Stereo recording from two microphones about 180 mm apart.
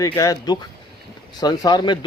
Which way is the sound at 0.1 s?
20° left (ahead or behind).